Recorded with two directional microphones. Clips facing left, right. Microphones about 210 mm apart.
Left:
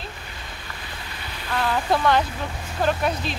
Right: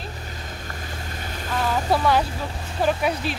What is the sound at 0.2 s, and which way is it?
Boat, 40° right (ahead or behind).